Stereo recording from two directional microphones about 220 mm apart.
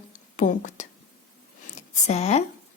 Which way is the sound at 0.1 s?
35° left (ahead or behind).